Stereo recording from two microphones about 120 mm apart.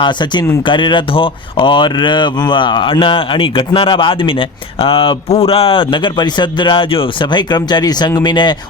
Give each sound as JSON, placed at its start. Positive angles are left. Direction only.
{"t": 0.0, "sound": "speech", "side_deg": 40}